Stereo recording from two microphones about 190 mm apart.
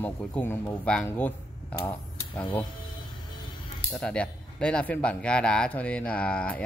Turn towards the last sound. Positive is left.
turn(degrees=5)  # may be behind; listen again after turning